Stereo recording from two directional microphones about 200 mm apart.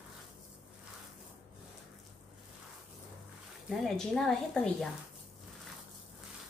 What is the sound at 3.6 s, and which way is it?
Speech, centre (ahead or behind).